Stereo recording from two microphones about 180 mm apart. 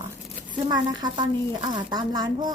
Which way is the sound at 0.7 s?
25° right (ahead or behind).